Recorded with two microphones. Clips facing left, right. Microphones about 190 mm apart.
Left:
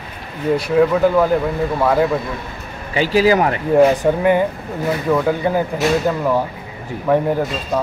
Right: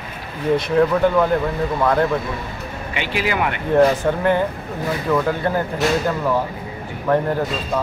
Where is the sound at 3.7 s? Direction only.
10° left (ahead or behind).